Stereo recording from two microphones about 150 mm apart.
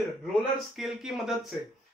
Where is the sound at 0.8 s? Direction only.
5° right (ahead or behind).